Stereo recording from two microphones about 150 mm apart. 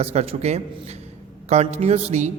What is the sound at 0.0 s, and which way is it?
A man's voice, 45° right (ahead or behind).